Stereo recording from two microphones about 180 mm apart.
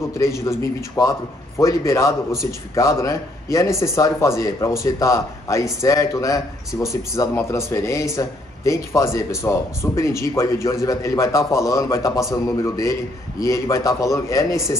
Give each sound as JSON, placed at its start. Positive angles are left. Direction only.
{"t": 0.2, "sound": "a man's voice", "side_deg": 15}